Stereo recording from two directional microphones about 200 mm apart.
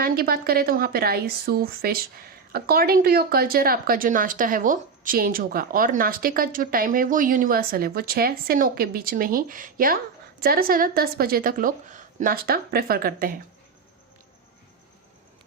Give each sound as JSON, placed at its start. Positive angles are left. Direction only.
{"t": 0.0, "sound": "a woman's voice", "side_deg": -50}